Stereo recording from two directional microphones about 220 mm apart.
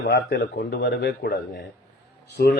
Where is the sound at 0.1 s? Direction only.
45° left (ahead or behind).